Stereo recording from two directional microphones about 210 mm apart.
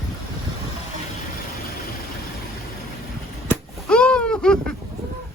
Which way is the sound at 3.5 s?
5° left (ahead or behind).